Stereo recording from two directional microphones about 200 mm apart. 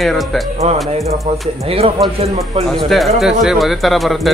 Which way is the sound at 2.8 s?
Centre (ahead or behind).